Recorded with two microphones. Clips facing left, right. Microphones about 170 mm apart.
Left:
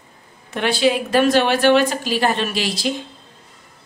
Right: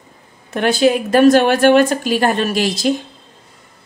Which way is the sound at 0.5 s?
45° right (ahead or behind).